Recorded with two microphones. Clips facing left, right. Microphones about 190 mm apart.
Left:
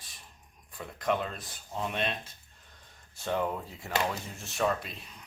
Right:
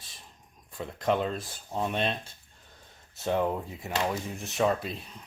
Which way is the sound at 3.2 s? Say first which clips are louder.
Right 4 dB; 20° right (ahead or behind).